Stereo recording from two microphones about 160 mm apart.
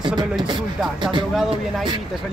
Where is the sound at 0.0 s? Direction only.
25° right (ahead or behind).